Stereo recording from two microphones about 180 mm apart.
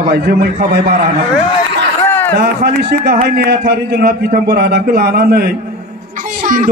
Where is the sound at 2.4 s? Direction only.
65° right (ahead or behind).